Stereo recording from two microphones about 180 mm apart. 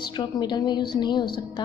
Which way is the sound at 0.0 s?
25° left (ahead or behind).